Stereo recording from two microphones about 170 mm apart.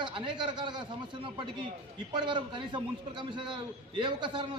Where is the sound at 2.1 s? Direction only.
25° right (ahead or behind).